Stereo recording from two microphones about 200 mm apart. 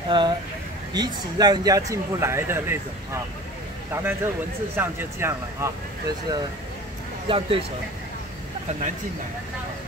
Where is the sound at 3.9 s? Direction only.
10° right (ahead or behind).